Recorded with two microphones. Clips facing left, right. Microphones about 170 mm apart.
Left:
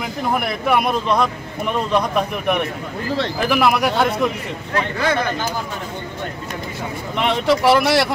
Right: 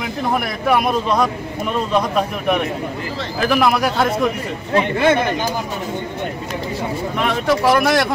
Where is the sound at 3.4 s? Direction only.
5° left (ahead or behind).